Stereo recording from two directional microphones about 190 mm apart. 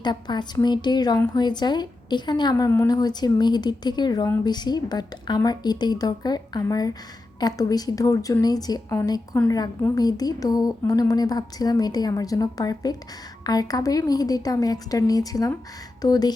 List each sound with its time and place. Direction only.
0.0 s speech: 20° left (ahead or behind)